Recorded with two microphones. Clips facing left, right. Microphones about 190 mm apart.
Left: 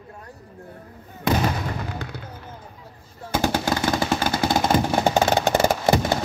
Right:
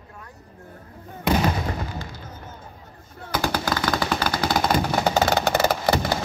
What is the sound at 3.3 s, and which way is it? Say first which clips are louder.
Machine gun: left 2 dB; 25° left (ahead or behind).